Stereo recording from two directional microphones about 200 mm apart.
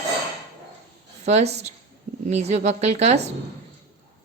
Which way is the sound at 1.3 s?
35° right (ahead or behind).